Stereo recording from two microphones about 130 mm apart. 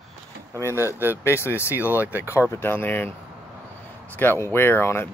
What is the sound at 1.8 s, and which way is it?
Speech, 15° right (ahead or behind).